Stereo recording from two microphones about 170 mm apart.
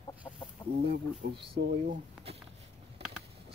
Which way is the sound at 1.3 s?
35° right (ahead or behind).